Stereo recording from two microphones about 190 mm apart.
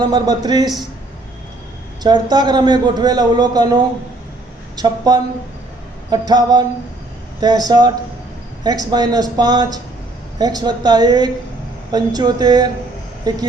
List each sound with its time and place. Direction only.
0.0 s a man's voice: 25° right (ahead or behind)
2.0 s a man's voice: 20° right (ahead or behind)
4.8 s a man's voice: 20° right (ahead or behind)